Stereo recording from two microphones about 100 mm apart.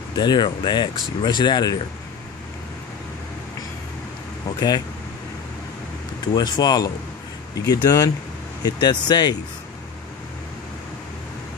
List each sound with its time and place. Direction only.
0.1 s speech: 45° left (ahead or behind)
4.6 s speech: 45° left (ahead or behind)
6.2 s speech: 45° left (ahead or behind)